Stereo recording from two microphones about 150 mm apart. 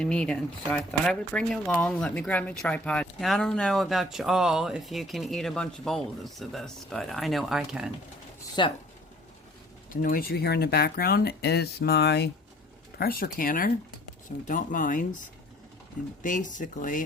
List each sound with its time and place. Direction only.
0.0 s speech: 5° left (ahead or behind)
8.6 s speech: 30° left (ahead or behind)
9.9 s speech: 70° left (ahead or behind); by 12.3 s 90° left
13.0 s speech: 80° left; by 17.0 s 60° left (ahead or behind)